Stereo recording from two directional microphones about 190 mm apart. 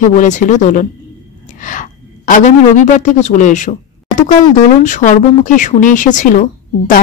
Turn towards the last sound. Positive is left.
turn(degrees=40)  # may be behind; listen again after turning